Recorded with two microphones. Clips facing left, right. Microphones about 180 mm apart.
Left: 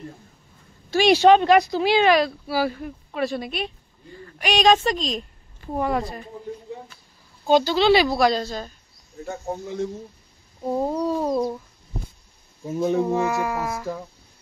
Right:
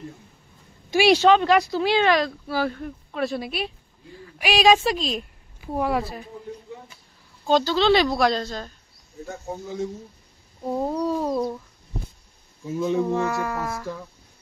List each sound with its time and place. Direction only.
1.1 s speech: 15° left (ahead or behind); by 6.2 s 5° right (ahead or behind)
7.4 s a woman's voice: 10° left (ahead or behind)
10.6 s speech: 5° left (ahead or behind)
12.6 s speech: 40° left (ahead or behind)
13.0 s a woman's voice: 10° left (ahead or behind)